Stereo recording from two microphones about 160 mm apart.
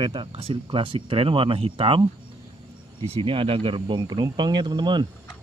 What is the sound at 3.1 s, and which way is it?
Speech, 35° right (ahead or behind).